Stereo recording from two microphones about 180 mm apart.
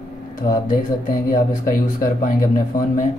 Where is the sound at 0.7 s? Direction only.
50° left (ahead or behind).